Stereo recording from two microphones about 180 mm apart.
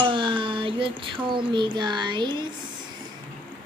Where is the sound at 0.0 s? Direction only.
25° right (ahead or behind).